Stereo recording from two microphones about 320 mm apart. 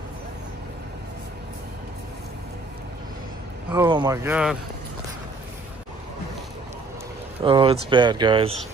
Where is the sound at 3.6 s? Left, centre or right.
Centre.